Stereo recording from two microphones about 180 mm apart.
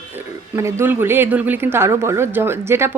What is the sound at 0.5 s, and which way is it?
Speech, 15° right (ahead or behind).